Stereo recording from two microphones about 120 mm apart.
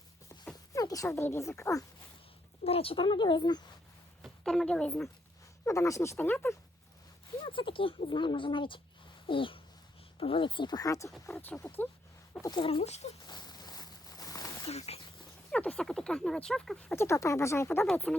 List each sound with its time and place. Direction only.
0.5 s speech: 30° left (ahead or behind)
2.6 s speech: 55° left (ahead or behind); by 3.6 s 40° left (ahead or behind)
4.2 s a woman's voice: 5° left (ahead or behind)
5.6 s speech: 25° left (ahead or behind)
7.4 s speech: 45° left (ahead or behind); by 11.1 s 30° left (ahead or behind)
11.3 s speech: 15° left (ahead or behind)
12.5 s speech: 40° left (ahead or behind)
12.8 s speech: 65° left (ahead or behind)
13.2 s a sound: 35° left (ahead or behind)
14.7 s speech: 60° left (ahead or behind)
15.5 s speech: 10° left (ahead or behind)
16.9 s speech: 20° left (ahead or behind)